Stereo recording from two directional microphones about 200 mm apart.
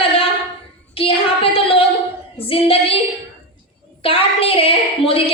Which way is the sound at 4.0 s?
30° left (ahead or behind).